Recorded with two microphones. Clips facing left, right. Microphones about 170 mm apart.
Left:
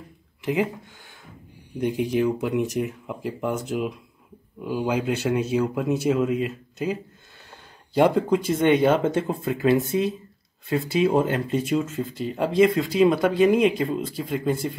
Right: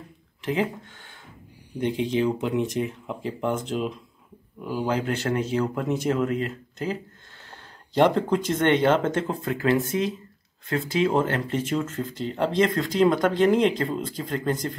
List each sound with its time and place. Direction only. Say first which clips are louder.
1.8 s speech: left 1 dB; 10° left (ahead or behind)